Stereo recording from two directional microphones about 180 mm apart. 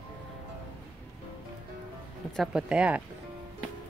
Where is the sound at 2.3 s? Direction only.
Centre (ahead or behind).